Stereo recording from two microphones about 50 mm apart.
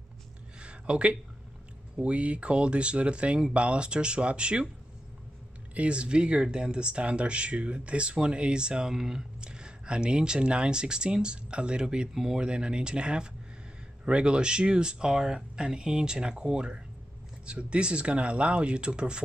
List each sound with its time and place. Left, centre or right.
0.6 s a sound: right
2.0 s speech: right
5.8 s speech: right